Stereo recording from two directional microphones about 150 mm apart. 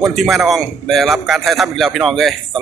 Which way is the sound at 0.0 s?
Centre (ahead or behind).